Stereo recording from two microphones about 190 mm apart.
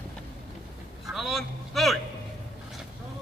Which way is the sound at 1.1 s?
Centre (ahead or behind).